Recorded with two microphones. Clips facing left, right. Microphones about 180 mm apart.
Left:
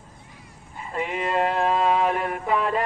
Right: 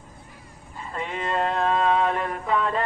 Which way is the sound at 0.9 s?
10° left (ahead or behind).